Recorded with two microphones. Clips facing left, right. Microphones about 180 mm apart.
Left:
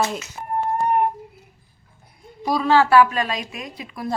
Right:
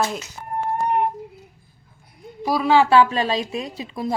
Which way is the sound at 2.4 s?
5° right (ahead or behind).